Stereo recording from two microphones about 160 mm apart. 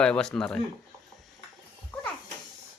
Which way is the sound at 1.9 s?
10° left (ahead or behind).